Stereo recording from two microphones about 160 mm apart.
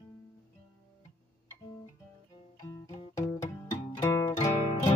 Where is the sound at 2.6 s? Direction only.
20° left (ahead or behind).